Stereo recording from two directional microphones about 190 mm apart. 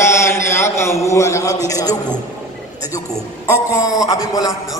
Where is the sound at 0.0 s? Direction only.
15° left (ahead or behind).